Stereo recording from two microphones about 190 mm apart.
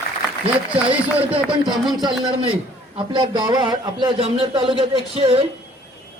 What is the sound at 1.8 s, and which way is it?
Speech, 25° right (ahead or behind).